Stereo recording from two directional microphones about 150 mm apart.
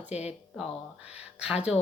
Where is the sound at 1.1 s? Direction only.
5° right (ahead or behind).